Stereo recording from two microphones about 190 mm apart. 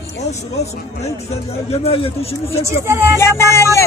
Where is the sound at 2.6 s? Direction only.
15° right (ahead or behind).